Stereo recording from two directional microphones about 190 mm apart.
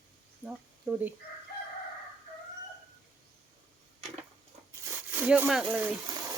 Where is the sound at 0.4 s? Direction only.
5° right (ahead or behind).